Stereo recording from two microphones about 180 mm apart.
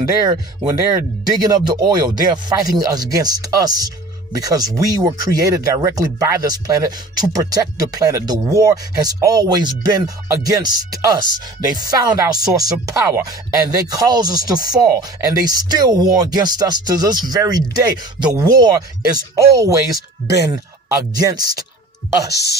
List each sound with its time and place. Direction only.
0.3 s speech: 20° right (ahead or behind)
22.3 s speech: 65° left (ahead or behind)